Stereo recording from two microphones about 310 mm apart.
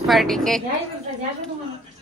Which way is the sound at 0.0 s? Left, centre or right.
Centre.